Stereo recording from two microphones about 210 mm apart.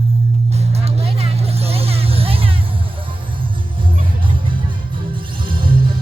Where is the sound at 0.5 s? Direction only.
30° right (ahead or behind).